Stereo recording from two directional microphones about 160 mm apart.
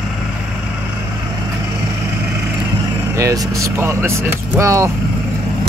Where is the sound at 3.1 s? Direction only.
20° right (ahead or behind).